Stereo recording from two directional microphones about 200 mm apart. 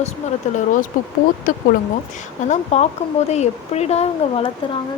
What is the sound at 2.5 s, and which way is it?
Speech, 35° left (ahead or behind).